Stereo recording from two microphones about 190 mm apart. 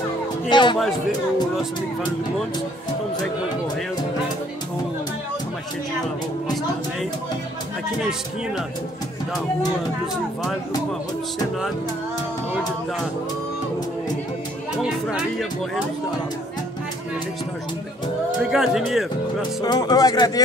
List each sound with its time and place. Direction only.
0.5 s speech: 25° left (ahead or behind)
14.8 s speech: centre (ahead or behind)
18.5 s speech: centre (ahead or behind)
19.6 s speech: 20° left (ahead or behind)